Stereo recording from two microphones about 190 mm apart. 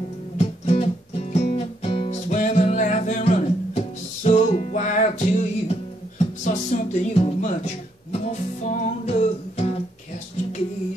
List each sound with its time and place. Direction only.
0.4 s music: 35° left (ahead or behind)
2.2 s music: 40° left (ahead or behind)